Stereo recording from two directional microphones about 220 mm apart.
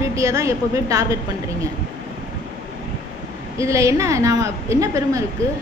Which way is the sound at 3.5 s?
15° right (ahead or behind).